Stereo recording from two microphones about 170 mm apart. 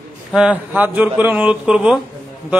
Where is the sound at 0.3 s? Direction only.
5° right (ahead or behind).